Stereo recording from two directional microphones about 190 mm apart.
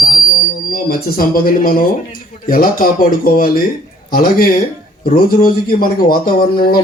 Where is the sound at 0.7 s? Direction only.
50° left (ahead or behind).